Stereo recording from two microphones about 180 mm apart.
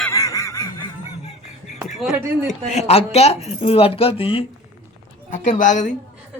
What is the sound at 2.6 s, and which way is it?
Speech, 40° left (ahead or behind).